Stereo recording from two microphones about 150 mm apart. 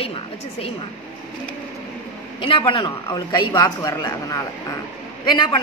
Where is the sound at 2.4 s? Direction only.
35° left (ahead or behind).